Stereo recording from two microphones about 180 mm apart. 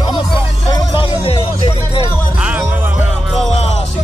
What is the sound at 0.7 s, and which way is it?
Music, 30° left (ahead or behind).